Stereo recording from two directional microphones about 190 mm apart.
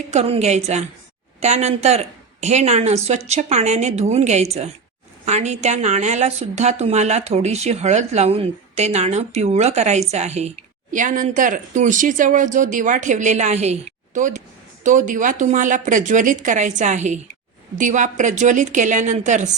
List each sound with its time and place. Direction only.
0.1 s a woman's voice: 35° right (ahead or behind)